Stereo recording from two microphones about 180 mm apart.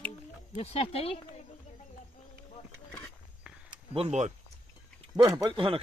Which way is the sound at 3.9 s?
35° right (ahead or behind).